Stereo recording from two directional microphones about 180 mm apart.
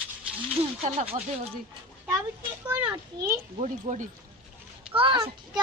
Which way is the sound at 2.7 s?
10° right (ahead or behind).